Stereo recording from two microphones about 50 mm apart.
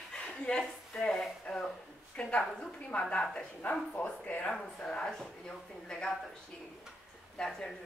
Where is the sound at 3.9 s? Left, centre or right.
Left.